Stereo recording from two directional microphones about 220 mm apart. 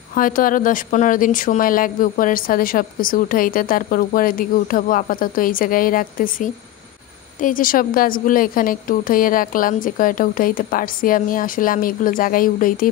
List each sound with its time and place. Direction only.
0.1 s speech: 40° left (ahead or behind)